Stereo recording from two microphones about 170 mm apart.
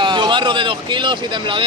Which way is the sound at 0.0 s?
30° right (ahead or behind).